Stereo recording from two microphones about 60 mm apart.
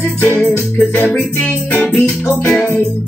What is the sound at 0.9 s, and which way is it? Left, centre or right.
Music, left.